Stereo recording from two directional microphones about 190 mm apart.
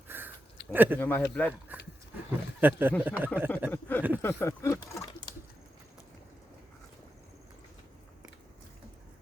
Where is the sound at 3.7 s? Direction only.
10° left (ahead or behind).